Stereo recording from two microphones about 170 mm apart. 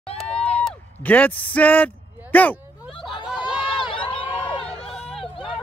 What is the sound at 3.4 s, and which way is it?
Run, 30° left (ahead or behind).